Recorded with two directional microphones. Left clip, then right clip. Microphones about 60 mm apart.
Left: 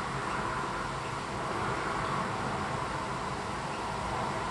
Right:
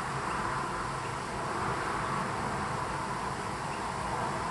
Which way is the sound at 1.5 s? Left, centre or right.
Centre.